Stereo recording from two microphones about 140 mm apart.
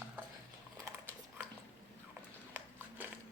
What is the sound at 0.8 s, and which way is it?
Dog, 15° right (ahead or behind).